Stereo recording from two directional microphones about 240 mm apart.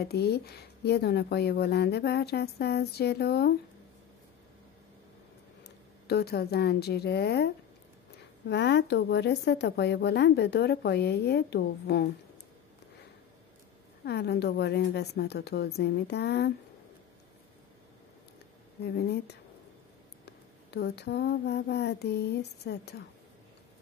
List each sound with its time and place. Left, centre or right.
0.0 s a woman's voice: left
6.0 s a woman's voice: left
14.0 s a woman's voice: left
18.9 s a woman's voice: left